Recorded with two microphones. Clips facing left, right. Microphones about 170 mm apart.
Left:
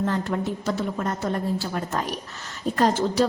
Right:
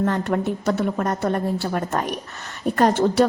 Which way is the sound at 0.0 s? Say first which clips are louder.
Right 4 dB; 60° right (ahead or behind).